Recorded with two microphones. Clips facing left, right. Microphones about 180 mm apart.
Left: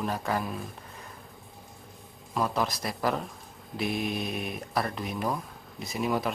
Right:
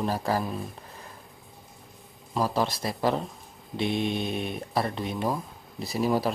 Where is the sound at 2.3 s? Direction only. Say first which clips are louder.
Right 2 dB; 30° right (ahead or behind).